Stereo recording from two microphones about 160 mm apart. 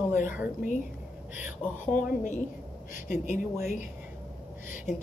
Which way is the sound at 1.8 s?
55° left (ahead or behind).